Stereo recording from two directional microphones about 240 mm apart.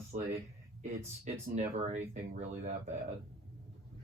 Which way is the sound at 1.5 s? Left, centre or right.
Right.